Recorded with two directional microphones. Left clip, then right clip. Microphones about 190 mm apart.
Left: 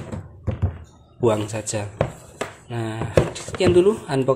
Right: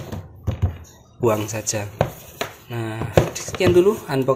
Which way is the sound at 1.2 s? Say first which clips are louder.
Even; 5° left (ahead or behind).